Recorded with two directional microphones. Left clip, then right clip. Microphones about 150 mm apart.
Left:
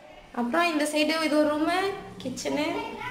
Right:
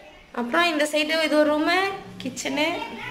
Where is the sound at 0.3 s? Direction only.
Centre (ahead or behind).